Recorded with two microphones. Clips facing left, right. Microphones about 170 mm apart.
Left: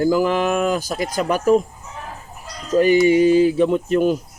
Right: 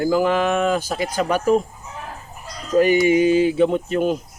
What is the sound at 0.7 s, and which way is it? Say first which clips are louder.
Speech: even; 40° left (ahead or behind).